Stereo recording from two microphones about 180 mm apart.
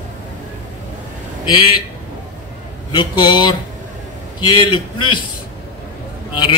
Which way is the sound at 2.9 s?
25° left (ahead or behind).